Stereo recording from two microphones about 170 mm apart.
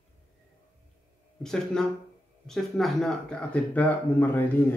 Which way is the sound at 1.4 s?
5° left (ahead or behind).